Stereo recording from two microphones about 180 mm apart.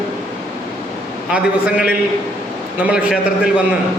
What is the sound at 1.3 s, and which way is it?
A man's voice, 5° right (ahead or behind).